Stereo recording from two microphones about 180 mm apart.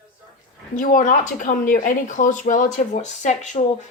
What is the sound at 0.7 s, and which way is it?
Speech, 45° left (ahead or behind).